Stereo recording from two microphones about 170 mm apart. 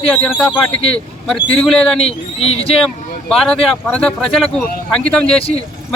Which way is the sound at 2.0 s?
35° left (ahead or behind).